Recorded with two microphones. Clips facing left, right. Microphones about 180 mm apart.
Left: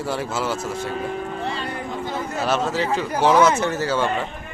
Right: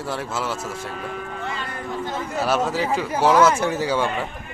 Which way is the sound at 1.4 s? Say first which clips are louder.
Left 3 dB; 30° left (ahead or behind).